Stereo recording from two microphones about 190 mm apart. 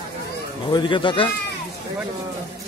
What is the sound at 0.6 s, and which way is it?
Speech, 25° left (ahead or behind).